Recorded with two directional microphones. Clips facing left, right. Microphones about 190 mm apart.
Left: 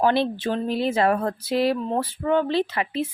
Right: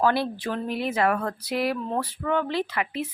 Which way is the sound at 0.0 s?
25° left (ahead or behind).